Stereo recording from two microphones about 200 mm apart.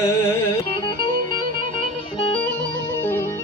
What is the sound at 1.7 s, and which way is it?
Music, 25° left (ahead or behind).